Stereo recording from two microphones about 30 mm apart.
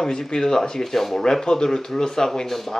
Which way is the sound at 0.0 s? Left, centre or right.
Left.